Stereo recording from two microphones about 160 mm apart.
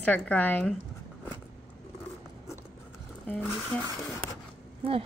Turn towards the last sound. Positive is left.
turn(degrees=-35)  # may be behind; listen again after turning